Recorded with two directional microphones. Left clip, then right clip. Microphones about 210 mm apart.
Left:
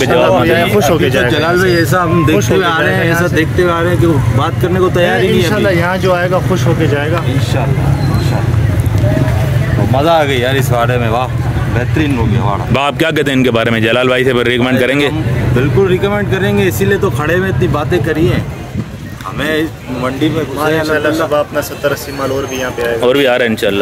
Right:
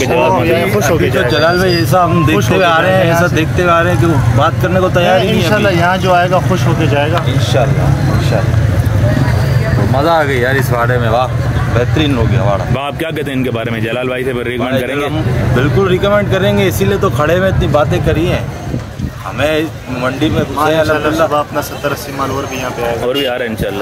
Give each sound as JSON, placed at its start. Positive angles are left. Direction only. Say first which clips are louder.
{"t": 0.1, "sound": "a man's voice", "louder": "left 1 dB", "side_deg": 40}
{"t": 1.3, "sound": "speech", "louder": "even", "side_deg": 5}
{"t": 5.5, "sound": "speech", "louder": "right 1 dB", "side_deg": 10}
{"t": 9.9, "sound": "speech", "louder": "left 1 dB", "side_deg": 35}
{"t": 11.7, "sound": "speech", "louder": "right 2 dB", "side_deg": -5}
{"t": 12.7, "sound": "a man's voice", "louder": "left 6 dB", "side_deg": 45}
{"t": 15.5, "sound": "speech", "louder": "left 1 dB", "side_deg": -15}
{"t": 21.3, "sound": "speech", "louder": "left 1 dB", "side_deg": 15}
{"t": 23.0, "sound": "speech", "louder": "left 9 dB", "side_deg": 55}